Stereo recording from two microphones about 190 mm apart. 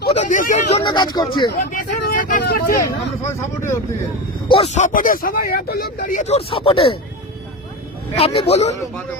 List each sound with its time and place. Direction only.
0.1 s a sound: 40° left (ahead or behind)
0.8 s speech: 20° left (ahead or behind)
1.5 s speech: 50° left (ahead or behind)
2.8 s speech: 15° left (ahead or behind)
4.4 s speech: 30° left (ahead or behind)
8.1 s a man's voice: 35° left (ahead or behind)